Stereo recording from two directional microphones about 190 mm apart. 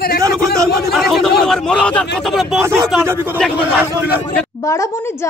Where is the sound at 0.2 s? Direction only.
15° right (ahead or behind).